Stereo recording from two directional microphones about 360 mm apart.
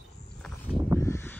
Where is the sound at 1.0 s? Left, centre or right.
Centre.